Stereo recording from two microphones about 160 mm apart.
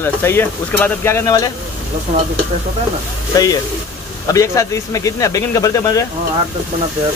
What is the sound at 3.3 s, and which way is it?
Speech, 20° left (ahead or behind).